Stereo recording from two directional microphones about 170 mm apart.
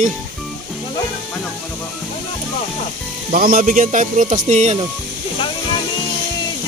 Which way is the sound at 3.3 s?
55° right (ahead or behind).